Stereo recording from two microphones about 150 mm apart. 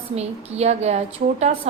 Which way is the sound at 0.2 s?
45° right (ahead or behind).